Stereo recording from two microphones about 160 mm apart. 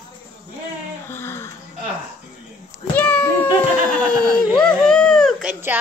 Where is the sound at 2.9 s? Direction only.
15° left (ahead or behind).